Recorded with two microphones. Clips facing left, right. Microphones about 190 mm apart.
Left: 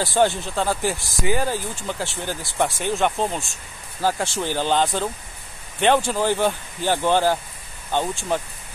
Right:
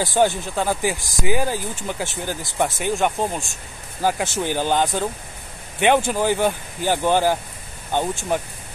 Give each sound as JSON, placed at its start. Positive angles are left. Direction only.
{"t": 0.0, "sound": "speech", "side_deg": -20}
{"t": 5.9, "sound": "speech", "side_deg": -15}